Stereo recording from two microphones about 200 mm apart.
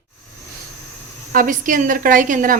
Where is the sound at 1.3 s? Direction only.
45° right (ahead or behind).